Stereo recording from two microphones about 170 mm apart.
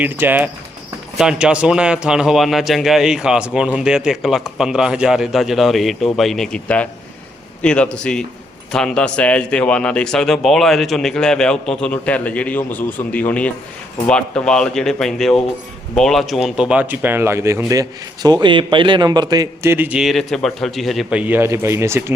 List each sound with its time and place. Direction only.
0.0 s a man's voice: 10° right (ahead or behind)